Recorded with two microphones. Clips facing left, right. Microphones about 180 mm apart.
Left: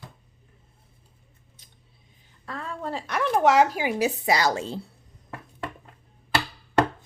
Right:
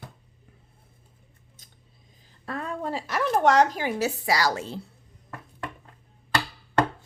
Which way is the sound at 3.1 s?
Centre (ahead or behind).